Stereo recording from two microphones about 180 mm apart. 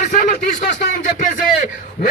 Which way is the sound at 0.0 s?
50° left (ahead or behind).